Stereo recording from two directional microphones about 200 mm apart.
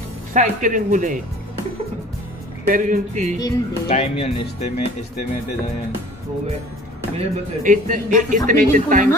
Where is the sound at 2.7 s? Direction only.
40° right (ahead or behind).